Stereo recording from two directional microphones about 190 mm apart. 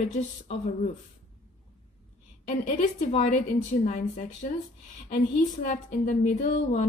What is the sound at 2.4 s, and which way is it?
A woman's voice, 40° left (ahead or behind).